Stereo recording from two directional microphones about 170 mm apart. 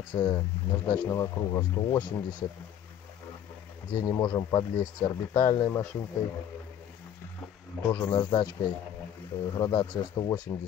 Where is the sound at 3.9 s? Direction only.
25° left (ahead or behind).